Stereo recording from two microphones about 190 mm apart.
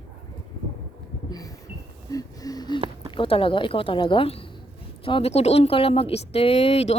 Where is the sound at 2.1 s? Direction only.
20° left (ahead or behind).